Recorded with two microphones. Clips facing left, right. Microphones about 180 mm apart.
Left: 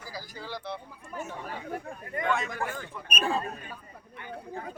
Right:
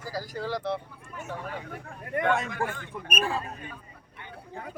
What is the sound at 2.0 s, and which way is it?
Speech, 60° right (ahead or behind).